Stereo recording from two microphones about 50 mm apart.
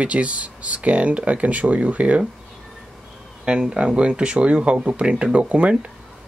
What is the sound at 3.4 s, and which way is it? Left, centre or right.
Speech, centre.